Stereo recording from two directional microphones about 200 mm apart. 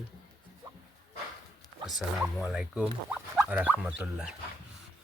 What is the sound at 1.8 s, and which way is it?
Speech, centre (ahead or behind).